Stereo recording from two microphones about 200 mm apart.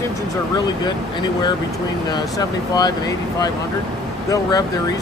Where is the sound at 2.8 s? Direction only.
20° left (ahead or behind).